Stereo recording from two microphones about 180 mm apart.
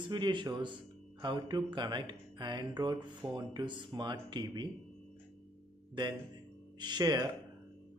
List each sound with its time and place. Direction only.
0.1 s speech: 25° right (ahead or behind)
6.0 s speech: 25° right (ahead or behind)